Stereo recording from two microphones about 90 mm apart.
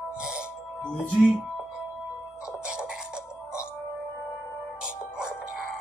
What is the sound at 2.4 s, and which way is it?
Music, 10° right (ahead or behind).